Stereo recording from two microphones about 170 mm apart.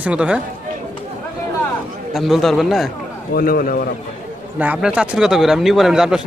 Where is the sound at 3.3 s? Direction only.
60° left (ahead or behind).